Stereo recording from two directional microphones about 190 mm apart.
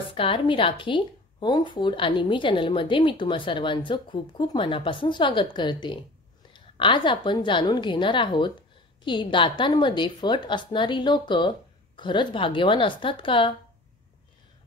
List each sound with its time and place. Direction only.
0.1 s speech: 25° left (ahead or behind)